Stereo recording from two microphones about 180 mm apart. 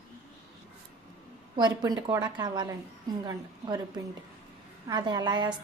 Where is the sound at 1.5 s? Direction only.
25° right (ahead or behind).